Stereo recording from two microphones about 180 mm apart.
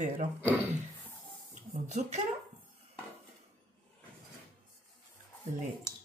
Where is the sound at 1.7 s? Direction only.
40° right (ahead or behind).